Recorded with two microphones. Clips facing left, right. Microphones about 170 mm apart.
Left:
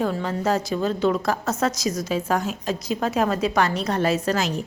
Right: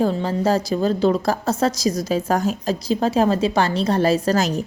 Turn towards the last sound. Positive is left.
turn(degrees=-40)  # may be behind; listen again after turning